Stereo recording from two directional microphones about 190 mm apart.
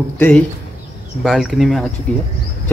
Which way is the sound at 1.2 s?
Centre (ahead or behind).